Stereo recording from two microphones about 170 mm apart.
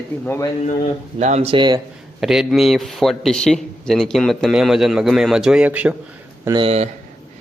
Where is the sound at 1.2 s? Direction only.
40° right (ahead or behind).